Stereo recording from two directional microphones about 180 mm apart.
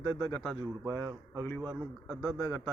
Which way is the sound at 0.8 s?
15° right (ahead or behind).